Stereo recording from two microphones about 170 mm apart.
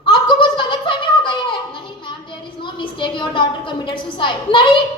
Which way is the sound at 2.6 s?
30° left (ahead or behind).